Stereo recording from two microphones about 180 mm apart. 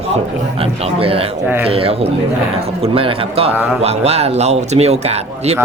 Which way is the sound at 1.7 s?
35° right (ahead or behind).